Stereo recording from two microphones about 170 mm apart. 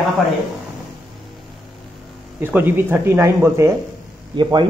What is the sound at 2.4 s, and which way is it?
Speech, 10° right (ahead or behind).